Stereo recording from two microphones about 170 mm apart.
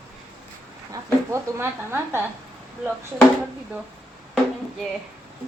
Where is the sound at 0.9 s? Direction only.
15° right (ahead or behind).